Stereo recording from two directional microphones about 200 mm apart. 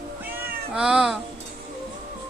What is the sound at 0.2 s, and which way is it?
Cat, 10° right (ahead or behind).